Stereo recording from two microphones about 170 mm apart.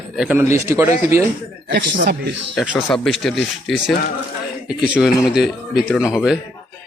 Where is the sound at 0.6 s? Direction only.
15° right (ahead or behind).